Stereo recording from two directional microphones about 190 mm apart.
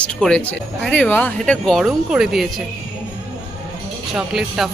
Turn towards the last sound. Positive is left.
turn(degrees=0)  # may be behind; listen again after turning